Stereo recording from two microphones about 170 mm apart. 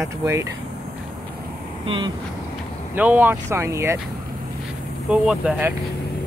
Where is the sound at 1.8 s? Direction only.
30° right (ahead or behind).